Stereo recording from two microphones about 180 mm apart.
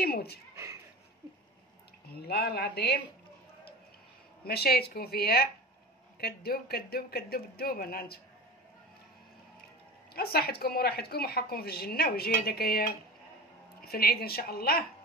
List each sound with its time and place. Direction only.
0.0 s speech: 60° left (ahead or behind)
2.1 s speech: 60° left (ahead or behind)
4.5 s speech: 60° left (ahead or behind)
10.1 s speech: 60° left (ahead or behind)